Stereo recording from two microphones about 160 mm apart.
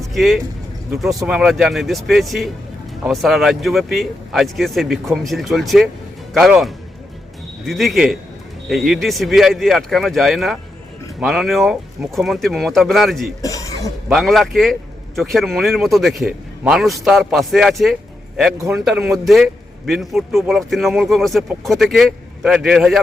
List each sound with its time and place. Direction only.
0.1 s speech: centre (ahead or behind)
13.4 s speech: 20° left (ahead or behind)
14.1 s speech: centre (ahead or behind)